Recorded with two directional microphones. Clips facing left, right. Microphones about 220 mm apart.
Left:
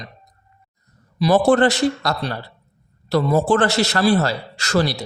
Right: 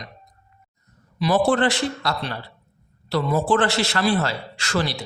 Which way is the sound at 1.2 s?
45° left (ahead or behind).